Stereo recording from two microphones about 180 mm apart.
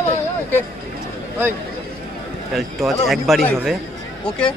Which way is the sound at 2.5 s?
Centre (ahead or behind).